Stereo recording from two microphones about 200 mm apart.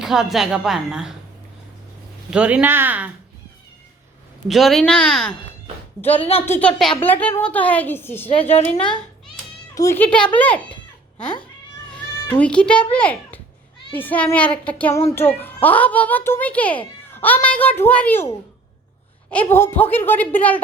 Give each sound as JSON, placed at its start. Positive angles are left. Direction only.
{"t": 0.0, "sound": "a woman's voice", "side_deg": 0}
{"t": 2.3, "sound": "speech", "side_deg": -5}
{"t": 4.4, "sound": "a woman's voice", "side_deg": 0}
{"t": 6.1, "sound": "a woman's voice", "side_deg": 30}
{"t": 6.4, "sound": "a child's voice", "side_deg": 10}
{"t": 8.3, "sound": "a woman's voice", "side_deg": 30}
{"t": 9.7, "sound": "a child's voice", "side_deg": 15}
{"t": 12.3, "sound": "a woman's voice", "side_deg": 5}